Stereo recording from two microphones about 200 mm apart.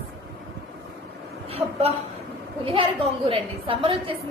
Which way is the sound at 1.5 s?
30° right (ahead or behind).